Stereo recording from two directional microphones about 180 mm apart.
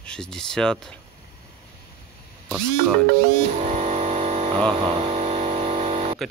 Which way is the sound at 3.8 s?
35° right (ahead or behind).